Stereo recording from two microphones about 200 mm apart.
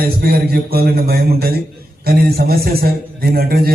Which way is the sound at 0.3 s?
50° right (ahead or behind).